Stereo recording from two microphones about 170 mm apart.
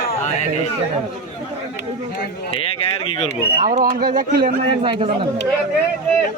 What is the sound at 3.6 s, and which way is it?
Speech, 55° right (ahead or behind).